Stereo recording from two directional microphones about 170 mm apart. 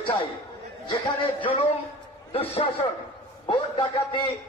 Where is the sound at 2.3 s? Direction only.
35° left (ahead or behind).